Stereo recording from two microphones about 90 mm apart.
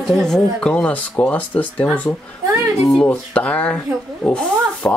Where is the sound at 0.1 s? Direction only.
5° left (ahead or behind).